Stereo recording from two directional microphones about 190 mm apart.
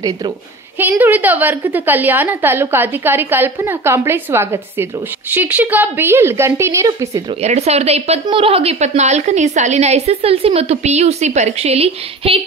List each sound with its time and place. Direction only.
0.7 s a woman's voice: 10° right (ahead or behind)
7.4 s a woman's voice: 35° right (ahead or behind)